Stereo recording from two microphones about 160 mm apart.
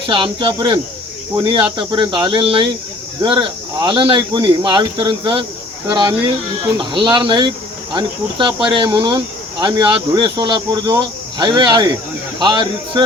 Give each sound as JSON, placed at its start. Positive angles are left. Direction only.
{"t": 0.1, "sound": "speech", "side_deg": -30}